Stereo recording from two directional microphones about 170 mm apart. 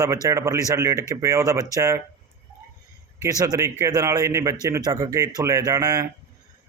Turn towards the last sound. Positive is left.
turn(degrees=-20)  # may be behind; listen again after turning